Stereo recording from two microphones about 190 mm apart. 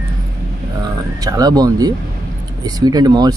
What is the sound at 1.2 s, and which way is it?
Speech, 20° right (ahead or behind).